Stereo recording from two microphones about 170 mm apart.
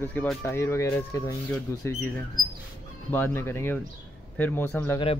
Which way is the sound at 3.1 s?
10° left (ahead or behind).